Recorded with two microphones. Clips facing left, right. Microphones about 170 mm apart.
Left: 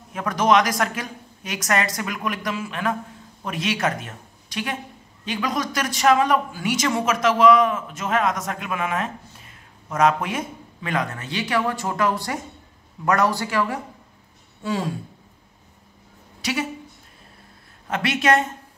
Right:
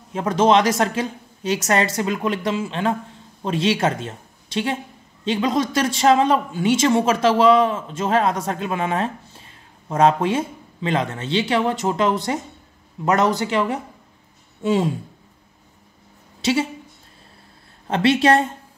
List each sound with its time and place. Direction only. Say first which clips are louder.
0.1 s speech: right 3 dB; 25° right (ahead or behind)
16.3 s a sound: right 6 dB; 25° right (ahead or behind)
17.8 s speech: right 5 dB; 30° right (ahead or behind)